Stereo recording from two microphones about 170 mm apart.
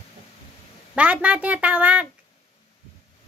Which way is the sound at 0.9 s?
10° right (ahead or behind).